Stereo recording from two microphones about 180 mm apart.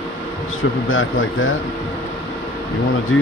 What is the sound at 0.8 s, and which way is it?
Speech, 90° left.